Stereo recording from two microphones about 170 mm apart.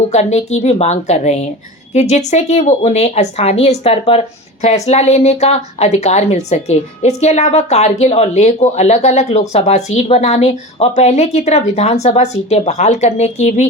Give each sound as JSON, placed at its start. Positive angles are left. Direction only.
{"t": 0.1, "sound": "a woman's voice", "side_deg": 40}